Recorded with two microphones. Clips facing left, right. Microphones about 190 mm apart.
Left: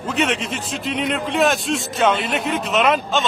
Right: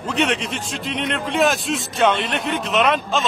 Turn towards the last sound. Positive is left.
turn(degrees=0)  # may be behind; listen again after turning